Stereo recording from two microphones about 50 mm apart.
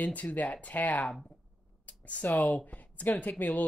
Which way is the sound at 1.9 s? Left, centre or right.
Left.